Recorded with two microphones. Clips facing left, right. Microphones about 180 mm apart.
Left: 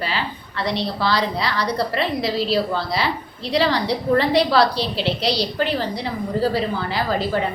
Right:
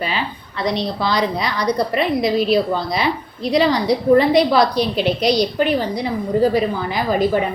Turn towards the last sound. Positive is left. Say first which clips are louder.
# right 4 dB
turn(degrees=-15)  # may be behind; listen again after turning